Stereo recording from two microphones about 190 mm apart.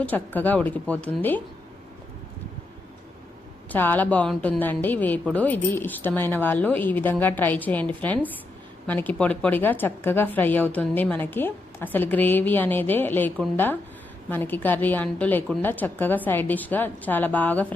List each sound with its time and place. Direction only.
0.3 s a woman's voice: 10° left (ahead or behind)
3.7 s a woman's voice: 10° left (ahead or behind)